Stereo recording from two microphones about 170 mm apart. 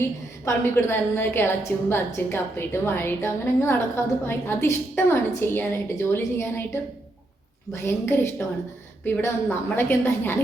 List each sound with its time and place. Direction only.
0.4 s a woman's voice: 15° left (ahead or behind)
7.7 s a woman's voice: 15° left (ahead or behind)